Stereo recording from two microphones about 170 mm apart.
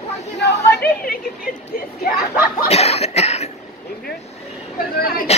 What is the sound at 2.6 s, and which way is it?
Cough, 40° left (ahead or behind).